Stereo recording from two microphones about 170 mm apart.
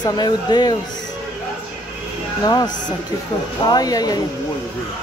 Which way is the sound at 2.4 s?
25° left (ahead or behind).